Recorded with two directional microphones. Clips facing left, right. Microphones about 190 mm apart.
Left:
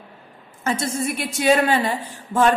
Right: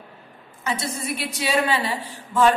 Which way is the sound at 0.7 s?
45° left (ahead or behind).